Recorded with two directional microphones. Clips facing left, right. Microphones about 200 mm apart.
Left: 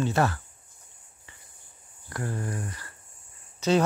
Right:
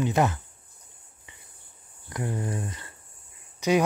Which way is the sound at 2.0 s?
20° right (ahead or behind).